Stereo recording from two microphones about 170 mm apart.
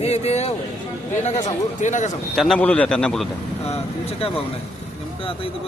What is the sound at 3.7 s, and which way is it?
Speech, 35° left (ahead or behind).